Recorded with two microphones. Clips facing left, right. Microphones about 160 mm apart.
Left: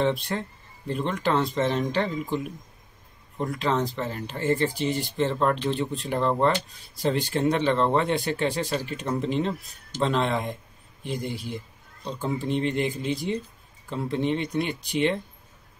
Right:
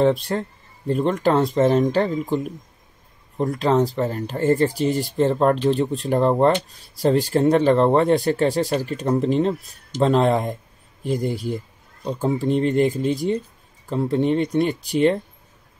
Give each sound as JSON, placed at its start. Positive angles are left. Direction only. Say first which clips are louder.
{"t": 0.3, "sound": "speech", "louder": "right 5 dB", "side_deg": -40}
{"t": 11.1, "sound": "a man's voice", "louder": "right 7 dB", "side_deg": 0}
{"t": 12.4, "sound": "speech", "louder": "right 7 dB", "side_deg": -40}